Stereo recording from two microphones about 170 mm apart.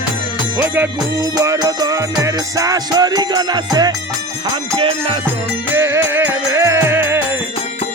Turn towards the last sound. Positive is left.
turn(degrees=-15)  # may be behind; listen again after turning